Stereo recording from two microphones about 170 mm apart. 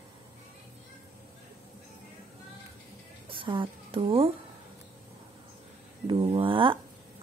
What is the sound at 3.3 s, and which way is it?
A woman's voice, 30° right (ahead or behind).